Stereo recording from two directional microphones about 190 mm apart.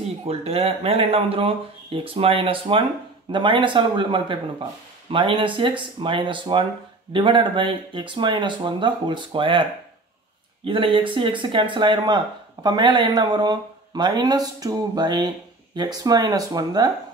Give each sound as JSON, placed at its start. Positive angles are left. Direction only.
{"t": 0.2, "sound": "speech", "side_deg": -30}